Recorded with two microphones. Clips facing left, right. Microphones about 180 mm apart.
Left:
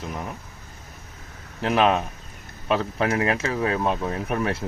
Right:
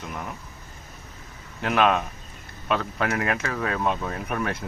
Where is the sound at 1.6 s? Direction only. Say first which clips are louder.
Left 1 dB; 30° left (ahead or behind).